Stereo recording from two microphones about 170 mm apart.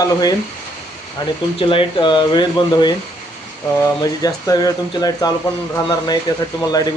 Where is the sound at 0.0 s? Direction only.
20° left (ahead or behind).